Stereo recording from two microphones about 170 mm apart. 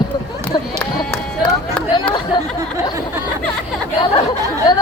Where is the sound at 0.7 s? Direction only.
5° left (ahead or behind).